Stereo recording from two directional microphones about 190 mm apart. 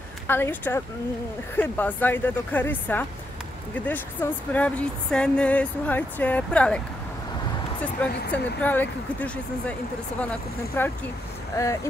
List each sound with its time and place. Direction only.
0.3 s speech: 10° left (ahead or behind)
7.8 s speech: 10° left (ahead or behind)